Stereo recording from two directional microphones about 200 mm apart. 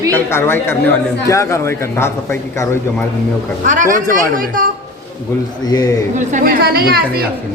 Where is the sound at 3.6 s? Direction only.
40° right (ahead or behind).